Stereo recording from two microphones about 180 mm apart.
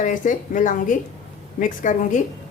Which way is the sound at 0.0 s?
45° left (ahead or behind).